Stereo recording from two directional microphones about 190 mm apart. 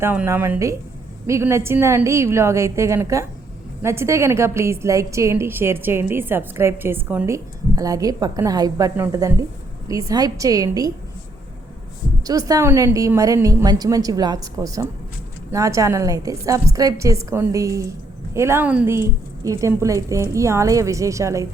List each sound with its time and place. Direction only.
0.0 s a woman's voice: 10° right (ahead or behind)
12.2 s a woman's voice: 20° right (ahead or behind)